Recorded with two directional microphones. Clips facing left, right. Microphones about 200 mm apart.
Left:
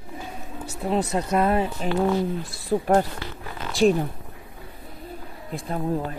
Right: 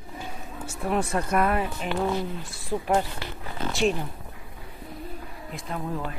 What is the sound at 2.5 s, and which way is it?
Speech, 35° left (ahead or behind).